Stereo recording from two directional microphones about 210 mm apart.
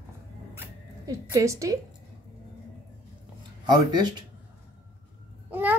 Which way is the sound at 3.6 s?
20° right (ahead or behind).